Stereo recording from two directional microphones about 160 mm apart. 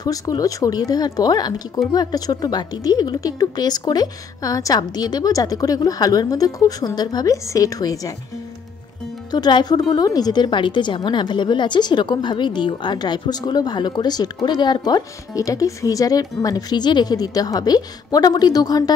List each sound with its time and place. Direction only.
0.0 s a woman's voice: 25° left (ahead or behind)
9.3 s a woman's voice: 25° left (ahead or behind)